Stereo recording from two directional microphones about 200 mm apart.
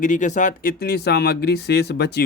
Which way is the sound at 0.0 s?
40° left (ahead or behind).